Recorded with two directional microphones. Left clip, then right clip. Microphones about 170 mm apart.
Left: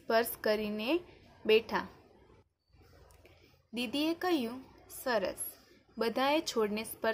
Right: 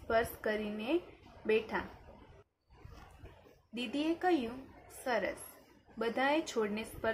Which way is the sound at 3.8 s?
40° left (ahead or behind).